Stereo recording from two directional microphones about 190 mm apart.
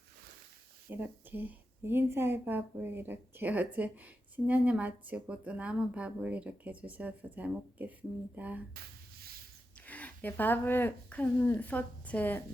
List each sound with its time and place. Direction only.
0.9 s speech: 10° right (ahead or behind)
8.7 s a sound: 55° right (ahead or behind)
9.8 s speech: 10° left (ahead or behind)